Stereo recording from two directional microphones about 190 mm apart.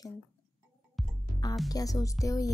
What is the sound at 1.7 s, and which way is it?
Speech, 20° left (ahead or behind).